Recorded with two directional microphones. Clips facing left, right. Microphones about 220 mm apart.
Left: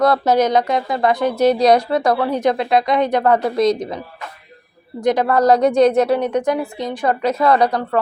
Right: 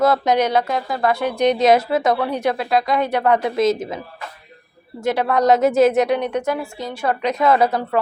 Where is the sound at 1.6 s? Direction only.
5° right (ahead or behind).